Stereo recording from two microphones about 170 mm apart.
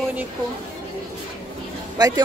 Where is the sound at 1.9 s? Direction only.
20° right (ahead or behind).